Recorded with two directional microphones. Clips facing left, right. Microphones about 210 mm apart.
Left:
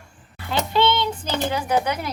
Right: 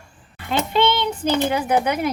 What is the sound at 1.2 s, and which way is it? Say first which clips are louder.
Speech: right 7 dB; 55° right (ahead or behind).